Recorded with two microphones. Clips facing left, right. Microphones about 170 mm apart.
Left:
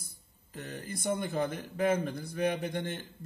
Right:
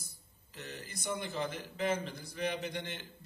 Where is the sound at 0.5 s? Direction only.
50° left (ahead or behind).